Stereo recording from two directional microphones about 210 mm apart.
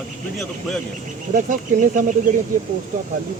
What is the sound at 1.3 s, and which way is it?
Speech, 40° right (ahead or behind).